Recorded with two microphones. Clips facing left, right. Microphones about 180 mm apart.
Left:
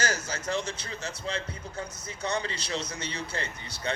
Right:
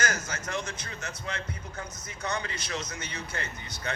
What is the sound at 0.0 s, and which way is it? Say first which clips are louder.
Speech: left 1 dB; 30° left (ahead or behind).